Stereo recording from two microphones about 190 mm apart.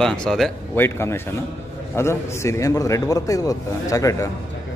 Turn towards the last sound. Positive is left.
turn(degrees=15)  # may be behind; listen again after turning